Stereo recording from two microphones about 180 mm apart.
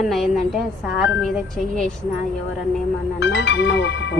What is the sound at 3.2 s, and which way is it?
Speech, 75° left (ahead or behind).